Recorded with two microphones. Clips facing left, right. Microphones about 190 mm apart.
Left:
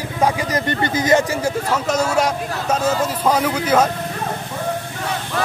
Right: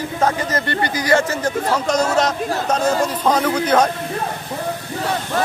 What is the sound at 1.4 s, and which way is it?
Speech, 10° left (ahead or behind).